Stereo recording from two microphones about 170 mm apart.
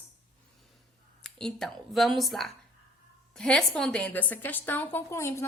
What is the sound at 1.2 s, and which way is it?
A woman's voice, 5° left (ahead or behind).